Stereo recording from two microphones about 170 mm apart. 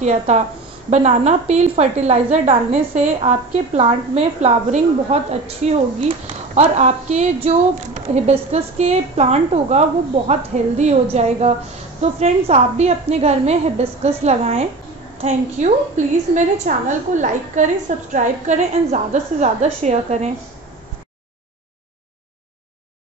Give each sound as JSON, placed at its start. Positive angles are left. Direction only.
{"t": 0.0, "sound": "a woman's voice", "side_deg": -45}